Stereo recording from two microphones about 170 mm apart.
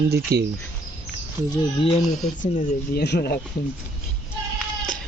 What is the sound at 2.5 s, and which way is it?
Speech, 75° left (ahead or behind).